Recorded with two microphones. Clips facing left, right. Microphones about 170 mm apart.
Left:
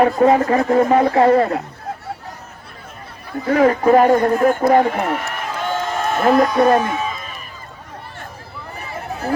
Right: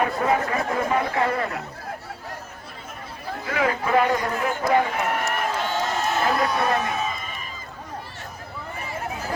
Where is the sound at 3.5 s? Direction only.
40° left (ahead or behind).